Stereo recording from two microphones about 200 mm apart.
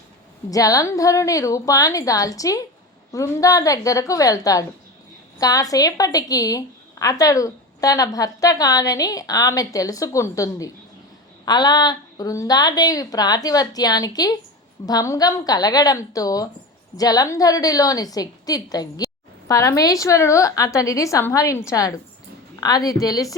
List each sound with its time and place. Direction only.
0.5 s a woman's voice: 15° left (ahead or behind)